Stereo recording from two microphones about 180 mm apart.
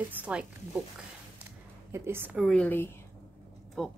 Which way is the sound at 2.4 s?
10° left (ahead or behind).